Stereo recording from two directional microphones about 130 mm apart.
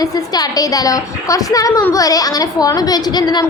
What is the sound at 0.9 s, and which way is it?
A woman's voice, 25° left (ahead or behind).